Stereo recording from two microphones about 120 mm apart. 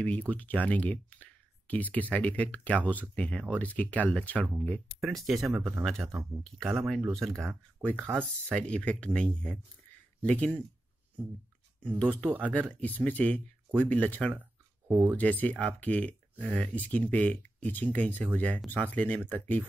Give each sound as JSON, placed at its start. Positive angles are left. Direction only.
{"t": 0.0, "sound": "speech", "side_deg": 15}
{"t": 5.0, "sound": "speech", "side_deg": 0}
{"t": 8.0, "sound": "speech", "side_deg": -15}
{"t": 8.5, "sound": "speech", "side_deg": 10}
{"t": 12.0, "sound": "speech", "side_deg": 10}
{"t": 12.3, "sound": "speech", "side_deg": -15}
{"t": 12.5, "sound": "speech", "side_deg": 10}
{"t": 14.4, "sound": "a sound", "side_deg": -20}
{"t": 15.1, "sound": "speech", "side_deg": 15}